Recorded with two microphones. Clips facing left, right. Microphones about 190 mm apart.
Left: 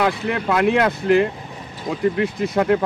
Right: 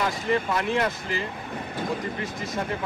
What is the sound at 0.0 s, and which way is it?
Speech, 65° left (ahead or behind).